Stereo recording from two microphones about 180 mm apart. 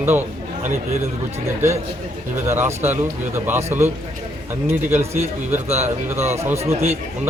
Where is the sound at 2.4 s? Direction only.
15° right (ahead or behind).